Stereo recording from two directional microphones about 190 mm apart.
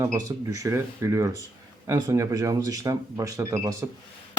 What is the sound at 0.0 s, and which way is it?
Speech, 15° right (ahead or behind).